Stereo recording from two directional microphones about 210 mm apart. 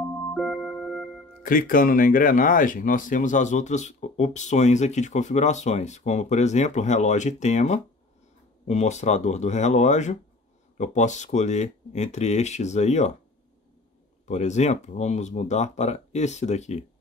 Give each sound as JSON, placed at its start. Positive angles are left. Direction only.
{"t": 0.3, "sound": "music", "side_deg": 0}
{"t": 1.4, "sound": "speech", "side_deg": 40}
{"t": 14.2, "sound": "speech", "side_deg": 35}